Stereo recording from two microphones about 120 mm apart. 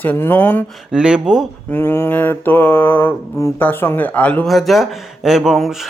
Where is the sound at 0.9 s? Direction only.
5° right (ahead or behind).